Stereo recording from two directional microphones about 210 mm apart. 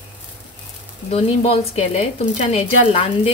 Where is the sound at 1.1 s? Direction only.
30° left (ahead or behind).